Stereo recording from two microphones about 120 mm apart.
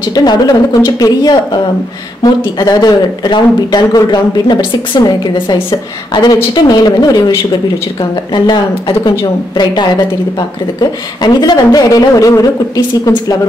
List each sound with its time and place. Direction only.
0.1 s speech: 35° left (ahead or behind)
8.0 s speech: 45° left (ahead or behind)
10.8 s speech: 35° left (ahead or behind)